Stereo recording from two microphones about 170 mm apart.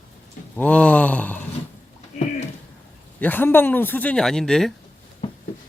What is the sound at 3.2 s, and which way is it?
Speech, 10° left (ahead or behind).